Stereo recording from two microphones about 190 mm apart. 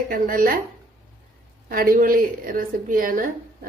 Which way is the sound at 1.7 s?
50° right (ahead or behind).